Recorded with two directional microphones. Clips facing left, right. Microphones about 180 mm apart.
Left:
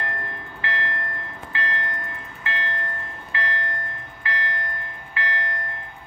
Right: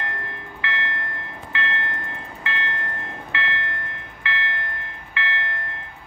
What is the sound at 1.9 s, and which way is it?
Train, 30° right (ahead or behind).